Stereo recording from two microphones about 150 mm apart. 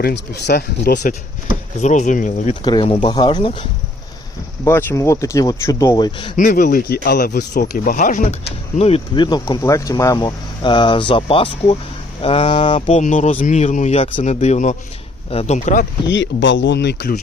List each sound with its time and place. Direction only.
0.0 s speech: 90° left
1.8 s speech: 55° left (ahead or behind)
2.6 s speech: 30° left (ahead or behind)
4.6 s speech: 15° left (ahead or behind)
6.3 s speech: 60° left (ahead or behind)
8.8 s speech: 35° left (ahead or behind)
13.0 s speech: 55° left (ahead or behind)
16.8 s speech: 90° left